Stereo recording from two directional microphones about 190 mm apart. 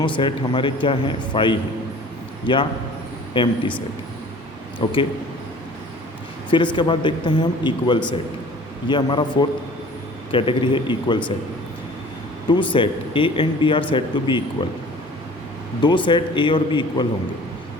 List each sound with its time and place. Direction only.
0.2 s a man's voice: 25° left (ahead or behind)
4.8 s a man's voice: 25° left (ahead or behind)
6.5 s a man's voice: 25° left (ahead or behind)
12.5 s a man's voice: 25° left (ahead or behind)
15.8 s a man's voice: 25° left (ahead or behind)